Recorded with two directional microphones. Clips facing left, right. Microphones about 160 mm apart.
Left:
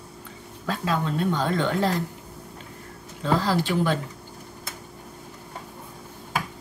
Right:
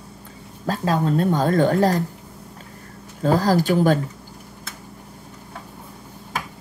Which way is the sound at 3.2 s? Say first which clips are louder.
Right 5 dB; 45° right (ahead or behind).